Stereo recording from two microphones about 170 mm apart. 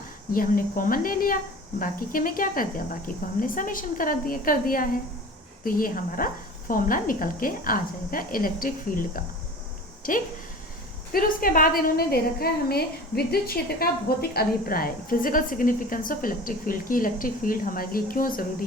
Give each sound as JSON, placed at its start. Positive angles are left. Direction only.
{"t": 0.3, "sound": "a woman's voice", "side_deg": 55}